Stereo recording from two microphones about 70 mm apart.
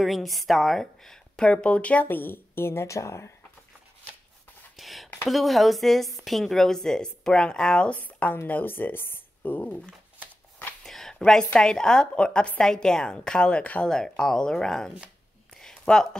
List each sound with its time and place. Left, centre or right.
0.0 s a woman's voice: centre; by 3.3 s left
4.7 s a sound: centre
5.3 s a woman's voice: centre
8.0 s a woman's voice: left
10.8 s a woman's voice: centre
15.6 s a sound: centre